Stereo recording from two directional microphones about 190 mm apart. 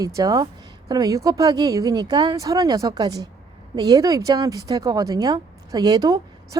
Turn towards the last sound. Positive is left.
turn(degrees=-20)  # may be behind; listen again after turning